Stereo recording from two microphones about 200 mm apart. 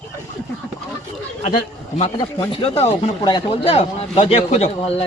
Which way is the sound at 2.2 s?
25° left (ahead or behind).